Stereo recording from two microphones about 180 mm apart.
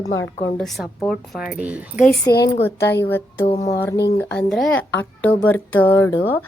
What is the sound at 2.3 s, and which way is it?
Speech, 20° left (ahead or behind).